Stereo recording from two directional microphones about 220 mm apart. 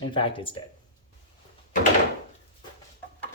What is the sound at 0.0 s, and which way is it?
Speech, 20° left (ahead or behind).